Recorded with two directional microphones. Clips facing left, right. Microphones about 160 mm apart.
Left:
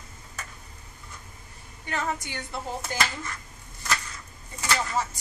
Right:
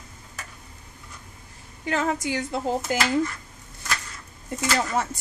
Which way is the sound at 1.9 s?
90° right.